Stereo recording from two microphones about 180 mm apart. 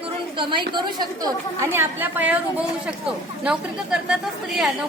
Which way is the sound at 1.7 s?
10° right (ahead or behind).